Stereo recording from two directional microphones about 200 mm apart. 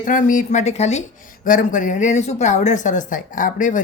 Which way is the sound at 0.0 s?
40° left (ahead or behind).